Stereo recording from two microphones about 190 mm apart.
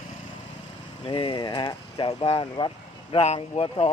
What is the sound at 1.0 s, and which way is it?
Speech, 25° left (ahead or behind).